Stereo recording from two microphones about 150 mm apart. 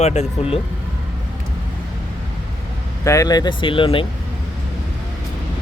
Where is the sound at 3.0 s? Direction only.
20° left (ahead or behind).